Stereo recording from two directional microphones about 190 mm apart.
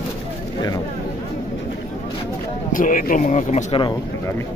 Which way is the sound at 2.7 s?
45° left (ahead or behind).